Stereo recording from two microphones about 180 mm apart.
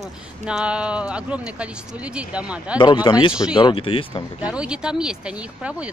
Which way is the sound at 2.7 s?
25° left (ahead or behind).